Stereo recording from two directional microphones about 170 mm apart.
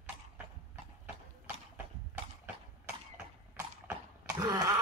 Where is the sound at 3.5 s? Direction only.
15° right (ahead or behind).